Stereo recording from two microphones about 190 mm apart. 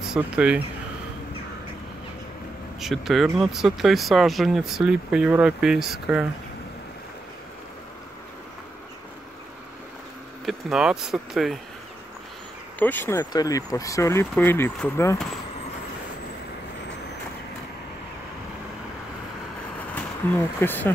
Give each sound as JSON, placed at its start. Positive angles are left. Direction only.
{"t": 0.0, "sound": "speech", "side_deg": -5}
{"t": 2.8, "sound": "speech", "side_deg": 0}
{"t": 10.4, "sound": "speech", "side_deg": -5}
{"t": 12.7, "sound": "speech", "side_deg": 10}
{"t": 20.3, "sound": "speech", "side_deg": 10}